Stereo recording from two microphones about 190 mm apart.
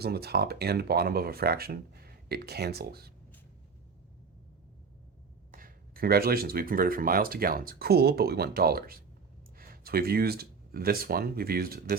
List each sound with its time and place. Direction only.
0.0 s speech: 55° right (ahead or behind)
5.5 s speech: 50° right (ahead or behind)